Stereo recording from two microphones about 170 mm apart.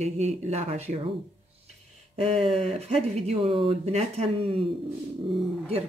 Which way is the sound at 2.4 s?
35° right (ahead or behind).